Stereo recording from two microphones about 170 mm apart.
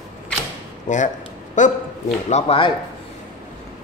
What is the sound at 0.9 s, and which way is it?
A woman's voice, 45° left (ahead or behind).